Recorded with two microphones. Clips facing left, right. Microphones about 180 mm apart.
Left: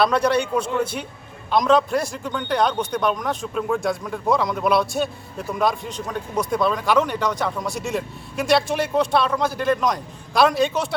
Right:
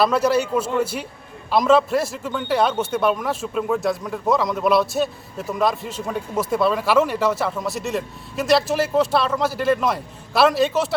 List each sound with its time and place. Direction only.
0.0 s a man's voice: 5° right (ahead or behind)